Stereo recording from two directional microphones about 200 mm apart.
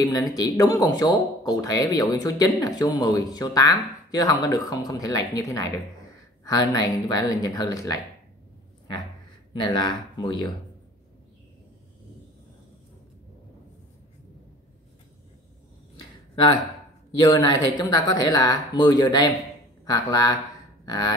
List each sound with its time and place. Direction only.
0.0 s speech: 20° left (ahead or behind)
9.5 s speech: 20° left (ahead or behind)
17.2 s speech: 20° left (ahead or behind)
20.8 s a sound: 20° left (ahead or behind)